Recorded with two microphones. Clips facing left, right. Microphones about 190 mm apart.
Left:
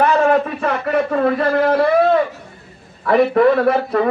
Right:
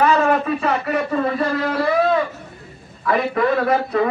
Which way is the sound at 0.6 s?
55° left (ahead or behind).